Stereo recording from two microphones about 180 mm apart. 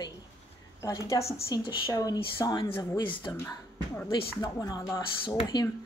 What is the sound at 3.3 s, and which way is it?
Speech, 15° left (ahead or behind).